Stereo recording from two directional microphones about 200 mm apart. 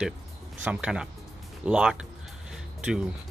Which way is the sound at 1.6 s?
5° right (ahead or behind).